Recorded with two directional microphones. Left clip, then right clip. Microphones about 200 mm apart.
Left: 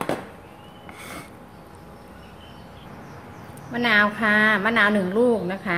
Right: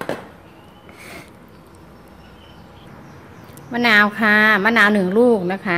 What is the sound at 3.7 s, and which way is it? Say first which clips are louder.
A woman's voice: right 5 dB; 45° right (ahead or behind).